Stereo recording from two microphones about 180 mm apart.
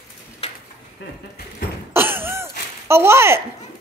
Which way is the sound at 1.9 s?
10° right (ahead or behind).